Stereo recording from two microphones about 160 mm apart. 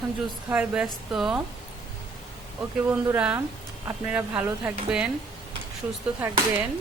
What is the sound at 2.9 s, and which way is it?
Speech, 10° right (ahead or behind).